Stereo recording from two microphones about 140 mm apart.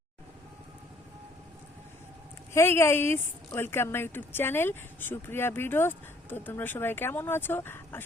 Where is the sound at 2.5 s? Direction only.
20° left (ahead or behind).